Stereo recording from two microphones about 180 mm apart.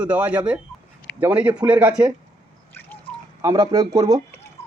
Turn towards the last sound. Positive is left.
turn(degrees=-20)  # may be behind; listen again after turning